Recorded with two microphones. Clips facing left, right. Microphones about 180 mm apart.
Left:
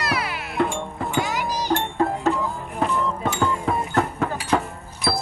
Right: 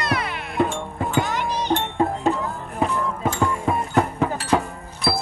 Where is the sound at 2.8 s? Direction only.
5° right (ahead or behind).